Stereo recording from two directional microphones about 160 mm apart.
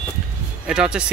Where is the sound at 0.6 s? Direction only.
5° right (ahead or behind).